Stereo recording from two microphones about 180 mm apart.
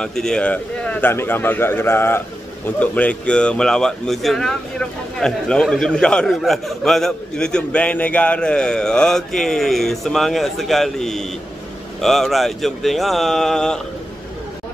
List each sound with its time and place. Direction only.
0.0 s a man's voice: 5° left (ahead or behind)